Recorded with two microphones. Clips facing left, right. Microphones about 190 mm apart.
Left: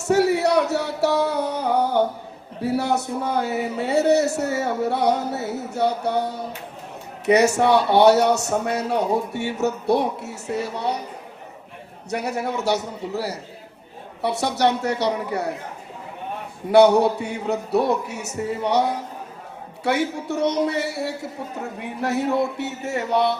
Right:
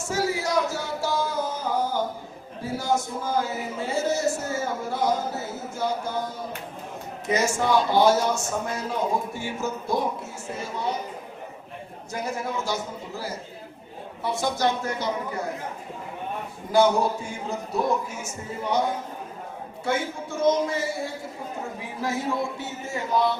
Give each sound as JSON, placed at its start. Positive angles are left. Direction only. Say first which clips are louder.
{"t": 0.0, "sound": "a sound", "louder": "left 8 dB", "side_deg": 65}
{"t": 2.6, "sound": "a man's voice", "louder": "left 4 dB", "side_deg": 65}
{"t": 12.1, "sound": "a man's voice", "louder": "left 4 dB", "side_deg": 70}
{"t": 16.7, "sound": "a man's voice", "louder": "left 6 dB", "side_deg": 70}